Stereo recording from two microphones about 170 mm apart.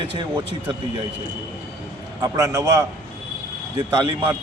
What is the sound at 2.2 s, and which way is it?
Speech, 20° right (ahead or behind).